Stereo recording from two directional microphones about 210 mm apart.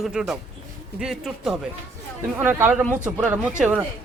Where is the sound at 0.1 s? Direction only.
Centre (ahead or behind).